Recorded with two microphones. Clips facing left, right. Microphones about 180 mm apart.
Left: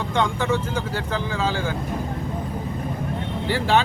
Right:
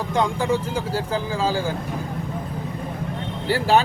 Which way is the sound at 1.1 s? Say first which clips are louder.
Right 1 dB; 35° right (ahead or behind).